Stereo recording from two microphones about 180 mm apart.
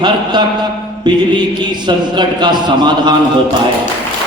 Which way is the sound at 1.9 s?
25° right (ahead or behind).